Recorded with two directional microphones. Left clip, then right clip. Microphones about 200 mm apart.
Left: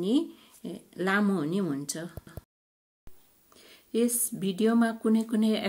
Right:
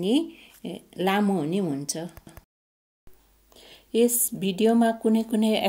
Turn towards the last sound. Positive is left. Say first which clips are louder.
# right 4 dB
turn(degrees=-10)  # may be behind; listen again after turning